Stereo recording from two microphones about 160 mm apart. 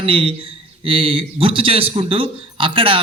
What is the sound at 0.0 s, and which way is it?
Speech, 35° right (ahead or behind).